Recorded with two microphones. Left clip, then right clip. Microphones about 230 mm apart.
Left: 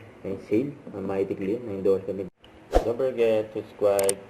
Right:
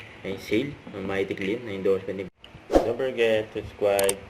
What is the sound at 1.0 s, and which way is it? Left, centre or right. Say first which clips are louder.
Speech: even; right.